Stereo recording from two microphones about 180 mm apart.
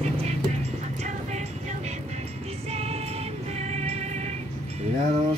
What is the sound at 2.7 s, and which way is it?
Music, 35° right (ahead or behind).